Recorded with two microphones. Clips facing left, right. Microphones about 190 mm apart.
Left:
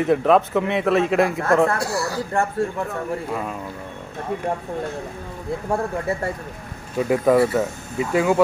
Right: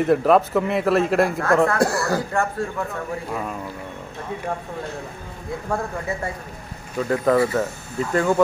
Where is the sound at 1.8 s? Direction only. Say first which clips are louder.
Right 4 dB; 50° right (ahead or behind).